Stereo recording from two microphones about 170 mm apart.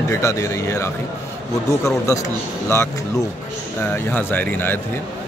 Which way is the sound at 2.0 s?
15° left (ahead or behind).